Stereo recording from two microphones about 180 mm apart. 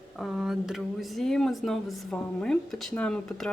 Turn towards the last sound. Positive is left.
turn(degrees=5)  # may be behind; listen again after turning